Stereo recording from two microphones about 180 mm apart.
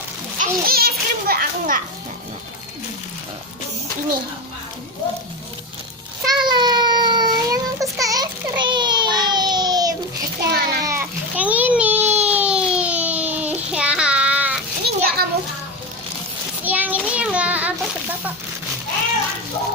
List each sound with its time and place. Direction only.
0.3 s children playing: 55° right (ahead or behind)
6.2 s child singing: 25° right (ahead or behind)
10.5 s a sound: 60° right (ahead or behind)
10.8 s baby cry: 10° right (ahead or behind)
12.3 s a sound: 5° right (ahead or behind)
14.8 s children playing: 60° right (ahead or behind)
16.6 s child singing: 10° right (ahead or behind)